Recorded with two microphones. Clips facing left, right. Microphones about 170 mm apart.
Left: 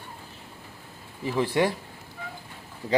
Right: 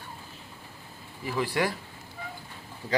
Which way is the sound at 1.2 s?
20° left (ahead or behind).